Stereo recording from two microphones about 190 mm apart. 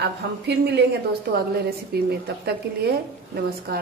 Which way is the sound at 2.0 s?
55° right (ahead or behind).